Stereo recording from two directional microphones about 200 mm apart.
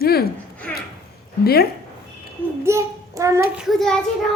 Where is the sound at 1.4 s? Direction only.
50° left (ahead or behind).